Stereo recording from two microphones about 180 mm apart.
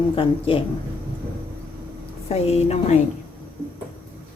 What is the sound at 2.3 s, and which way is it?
Speech, 35° left (ahead or behind).